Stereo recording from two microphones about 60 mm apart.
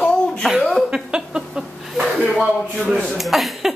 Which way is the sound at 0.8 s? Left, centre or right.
Centre.